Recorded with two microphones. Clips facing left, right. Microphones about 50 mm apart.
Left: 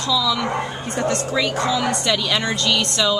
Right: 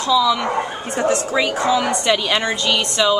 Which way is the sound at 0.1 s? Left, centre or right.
Right.